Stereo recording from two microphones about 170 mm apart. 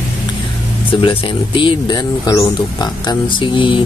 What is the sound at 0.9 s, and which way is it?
Speech, 30° left (ahead or behind).